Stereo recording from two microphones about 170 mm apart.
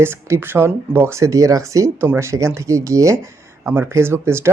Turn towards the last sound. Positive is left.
turn(degrees=-15)  # may be behind; listen again after turning